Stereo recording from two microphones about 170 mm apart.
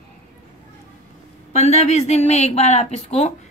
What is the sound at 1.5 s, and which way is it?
A woman's voice, 40° left (ahead or behind).